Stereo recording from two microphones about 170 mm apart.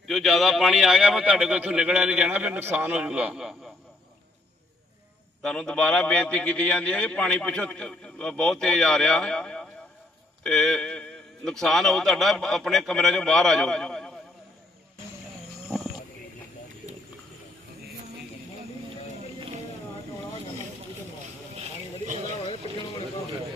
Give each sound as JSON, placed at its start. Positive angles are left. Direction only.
{"t": 0.1, "sound": "a man's voice", "side_deg": 0}
{"t": 5.4, "sound": "a man's voice", "side_deg": 5}
{"t": 21.6, "sound": "a sound", "side_deg": -45}